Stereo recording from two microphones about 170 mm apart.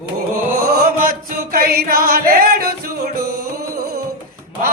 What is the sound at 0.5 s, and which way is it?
Chant, 55° right (ahead or behind).